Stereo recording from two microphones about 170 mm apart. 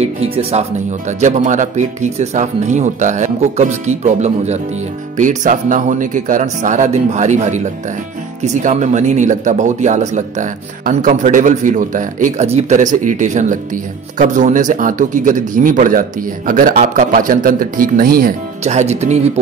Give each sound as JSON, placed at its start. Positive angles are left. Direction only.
{"t": 0.0, "sound": "speech", "side_deg": -40}
{"t": 18.6, "sound": "speech", "side_deg": -40}